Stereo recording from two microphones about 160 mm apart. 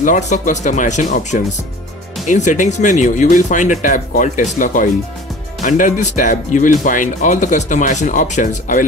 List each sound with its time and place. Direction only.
0.0 s speech: 50° left (ahead or behind)
5.6 s speech: 55° left (ahead or behind)